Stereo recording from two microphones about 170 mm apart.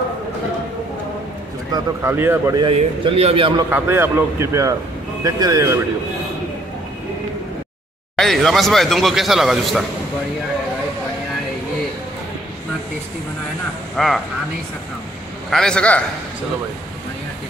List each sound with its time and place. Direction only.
1.7 s speech: 15° right (ahead or behind)
2.7 s a man's voice: 35° right (ahead or behind)
3.7 s speech: 15° right (ahead or behind)
8.2 s speech: centre (ahead or behind)
13.9 s speech: centre (ahead or behind)
15.5 s speech: 5° left (ahead or behind)